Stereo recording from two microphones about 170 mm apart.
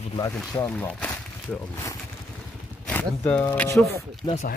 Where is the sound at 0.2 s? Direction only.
15° left (ahead or behind).